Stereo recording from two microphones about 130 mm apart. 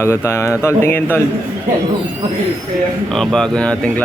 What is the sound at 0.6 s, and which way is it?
Speech, 20° left (ahead or behind).